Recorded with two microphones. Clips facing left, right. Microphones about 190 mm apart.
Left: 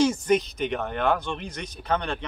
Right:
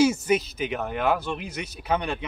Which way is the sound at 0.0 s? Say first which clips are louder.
Even; 5° right (ahead or behind).